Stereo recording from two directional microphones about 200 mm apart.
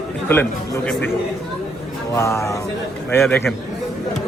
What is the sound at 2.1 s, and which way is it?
Speech, 15° left (ahead or behind).